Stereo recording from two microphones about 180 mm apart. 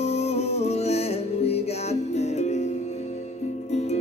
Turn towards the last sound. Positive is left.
turn(degrees=40)  # may be behind; listen again after turning